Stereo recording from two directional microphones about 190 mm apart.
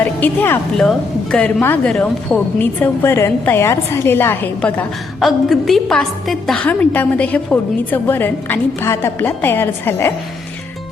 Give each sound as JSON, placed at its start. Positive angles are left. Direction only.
{"t": 0.0, "sound": "a woman's voice", "side_deg": 10}
{"t": 5.2, "sound": "a woman's voice", "side_deg": 0}